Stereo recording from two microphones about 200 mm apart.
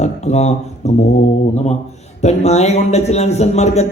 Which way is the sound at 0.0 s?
35° left (ahead or behind).